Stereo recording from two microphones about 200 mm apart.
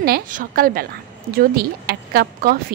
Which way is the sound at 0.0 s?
45° right (ahead or behind).